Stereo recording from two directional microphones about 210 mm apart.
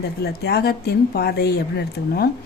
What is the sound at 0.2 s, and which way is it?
Speech, 50° left (ahead or behind).